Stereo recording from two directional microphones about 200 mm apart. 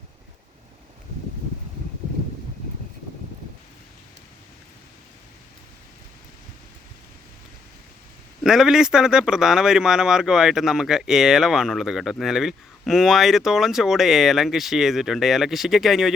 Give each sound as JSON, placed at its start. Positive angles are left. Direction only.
{"t": 8.4, "sound": "speech", "side_deg": 0}